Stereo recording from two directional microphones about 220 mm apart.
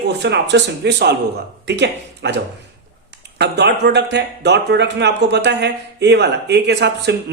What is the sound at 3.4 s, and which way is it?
Speech, 50° right (ahead or behind).